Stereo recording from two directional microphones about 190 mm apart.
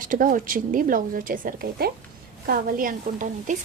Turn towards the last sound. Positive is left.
turn(degrees=-45)  # may be behind; listen again after turning